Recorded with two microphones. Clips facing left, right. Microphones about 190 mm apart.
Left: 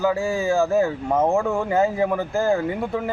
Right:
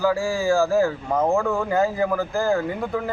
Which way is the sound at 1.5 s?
25° left (ahead or behind).